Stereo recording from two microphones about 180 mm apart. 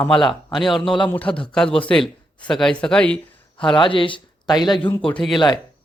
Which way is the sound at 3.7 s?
30° left (ahead or behind).